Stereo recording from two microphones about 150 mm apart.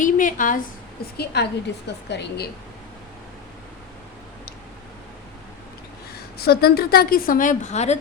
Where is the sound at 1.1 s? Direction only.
90° left.